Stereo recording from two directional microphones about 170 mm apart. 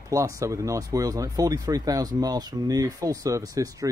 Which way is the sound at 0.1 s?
20° right (ahead or behind).